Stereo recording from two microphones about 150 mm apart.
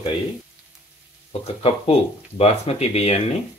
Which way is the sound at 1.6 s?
45° left (ahead or behind).